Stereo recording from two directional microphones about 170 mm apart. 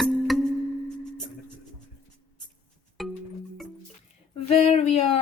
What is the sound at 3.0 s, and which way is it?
Music, centre (ahead or behind).